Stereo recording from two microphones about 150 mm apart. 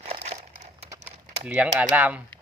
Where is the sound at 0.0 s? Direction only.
45° right (ahead or behind).